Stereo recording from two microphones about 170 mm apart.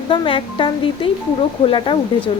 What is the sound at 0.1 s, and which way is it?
A woman's voice, 30° left (ahead or behind).